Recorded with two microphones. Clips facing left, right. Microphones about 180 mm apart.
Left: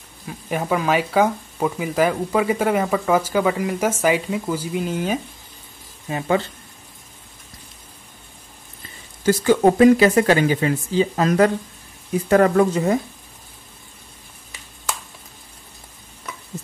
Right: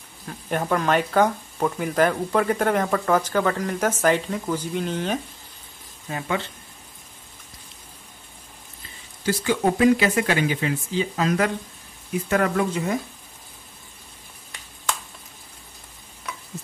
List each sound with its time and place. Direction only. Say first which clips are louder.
0.3 s speech: left 1 dB; 5° left (ahead or behind)
9.2 s speech: left 7 dB; 45° left (ahead or behind)